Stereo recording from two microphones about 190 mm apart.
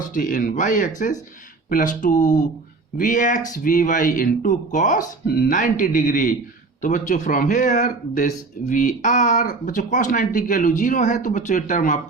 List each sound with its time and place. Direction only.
0.0 s speech: 45° left (ahead or behind)